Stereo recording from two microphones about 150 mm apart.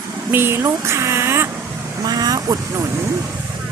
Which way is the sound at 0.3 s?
15° right (ahead or behind).